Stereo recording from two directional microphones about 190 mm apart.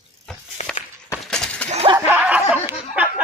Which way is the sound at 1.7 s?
30° right (ahead or behind).